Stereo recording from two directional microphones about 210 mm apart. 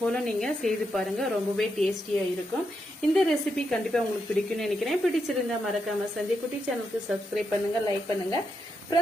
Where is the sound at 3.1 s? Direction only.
5° left (ahead or behind).